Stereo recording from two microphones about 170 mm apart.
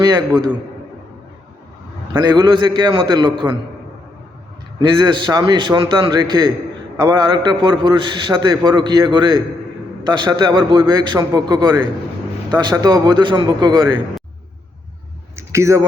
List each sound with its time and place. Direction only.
2.1 s a man's voice: 25° right (ahead or behind)
4.8 s a man's voice: 25° right (ahead or behind)
15.4 s speech: 15° right (ahead or behind)